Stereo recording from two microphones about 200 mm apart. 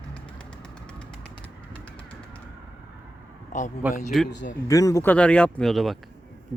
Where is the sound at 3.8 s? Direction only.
5° right (ahead or behind).